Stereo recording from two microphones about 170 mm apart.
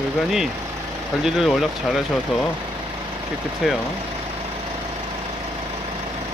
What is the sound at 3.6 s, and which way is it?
Speech, centre (ahead or behind).